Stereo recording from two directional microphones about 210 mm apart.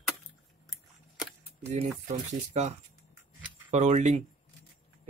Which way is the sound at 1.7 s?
35° right (ahead or behind).